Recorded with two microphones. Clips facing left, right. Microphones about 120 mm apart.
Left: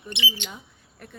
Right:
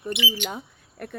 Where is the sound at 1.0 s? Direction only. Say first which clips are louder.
Right 9 dB; 60° right (ahead or behind).